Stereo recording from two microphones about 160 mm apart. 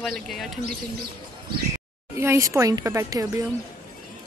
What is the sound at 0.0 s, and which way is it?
Speech, centre (ahead or behind).